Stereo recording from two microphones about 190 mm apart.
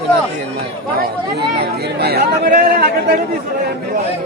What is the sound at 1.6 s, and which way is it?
Speech, 55° right (ahead or behind).